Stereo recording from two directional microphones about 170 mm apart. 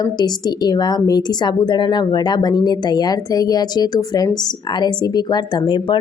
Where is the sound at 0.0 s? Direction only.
25° left (ahead or behind).